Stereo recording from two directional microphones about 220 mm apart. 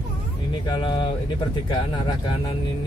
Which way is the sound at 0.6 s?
20° left (ahead or behind).